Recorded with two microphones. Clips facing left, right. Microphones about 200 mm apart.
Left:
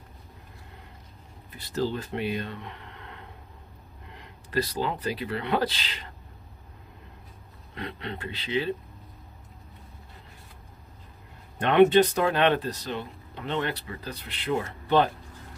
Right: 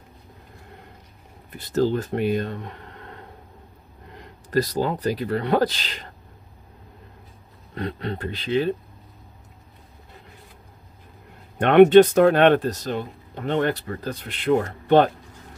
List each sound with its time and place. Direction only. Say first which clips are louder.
1.5 s speech: right 7 dB; 50° right (ahead or behind)
7.7 s speech: right 7 dB; 40° right (ahead or behind)
11.6 s speech: right 7 dB; 60° right (ahead or behind)